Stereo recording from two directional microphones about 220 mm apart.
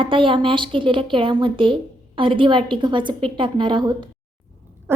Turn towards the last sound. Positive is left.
turn(degrees=-10)  # may be behind; listen again after turning